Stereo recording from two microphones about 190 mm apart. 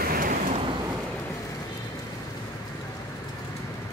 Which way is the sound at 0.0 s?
50° right (ahead or behind).